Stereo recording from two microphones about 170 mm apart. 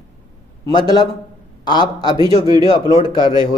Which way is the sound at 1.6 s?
25° left (ahead or behind).